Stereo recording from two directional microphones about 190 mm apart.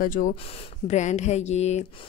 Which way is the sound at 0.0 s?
45° left (ahead or behind).